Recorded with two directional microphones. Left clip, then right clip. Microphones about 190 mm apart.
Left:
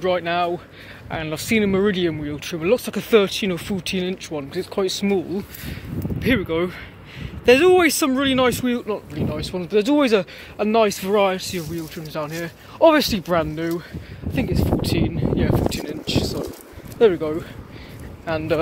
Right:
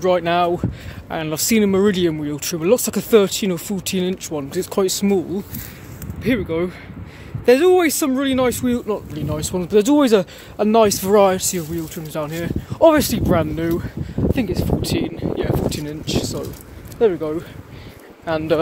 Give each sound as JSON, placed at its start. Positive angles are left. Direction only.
{"t": 0.0, "sound": "speech", "side_deg": -25}
{"t": 6.2, "sound": "speech", "side_deg": 0}
{"t": 8.7, "sound": "speech", "side_deg": -15}
{"t": 17.0, "sound": "speech", "side_deg": 10}
{"t": 18.2, "sound": "speech", "side_deg": -20}